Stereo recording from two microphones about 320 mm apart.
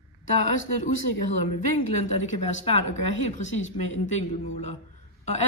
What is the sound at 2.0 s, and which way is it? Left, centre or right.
Speech, left.